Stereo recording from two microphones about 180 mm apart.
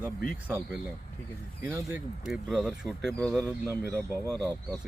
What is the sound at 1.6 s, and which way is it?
Speech, 15° right (ahead or behind).